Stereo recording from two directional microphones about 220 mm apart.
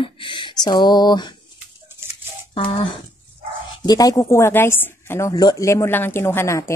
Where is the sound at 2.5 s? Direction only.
25° left (ahead or behind).